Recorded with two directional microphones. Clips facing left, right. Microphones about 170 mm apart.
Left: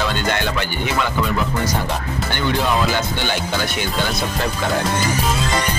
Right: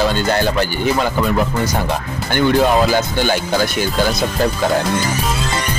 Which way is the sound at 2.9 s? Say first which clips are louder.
Right 5 dB; 40° right (ahead or behind).